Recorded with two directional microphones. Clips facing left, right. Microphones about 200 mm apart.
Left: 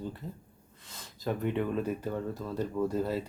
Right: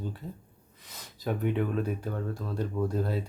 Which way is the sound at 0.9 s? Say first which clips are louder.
Right 1 dB; centre (ahead or behind).